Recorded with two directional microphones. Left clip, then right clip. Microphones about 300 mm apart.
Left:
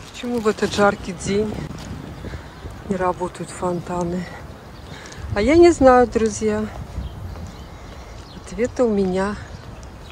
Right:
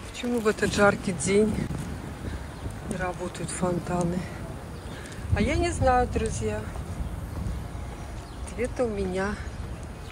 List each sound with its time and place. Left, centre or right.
0.2 s speech: centre
3.0 s speech: centre
5.3 s speech: centre
8.5 s speech: centre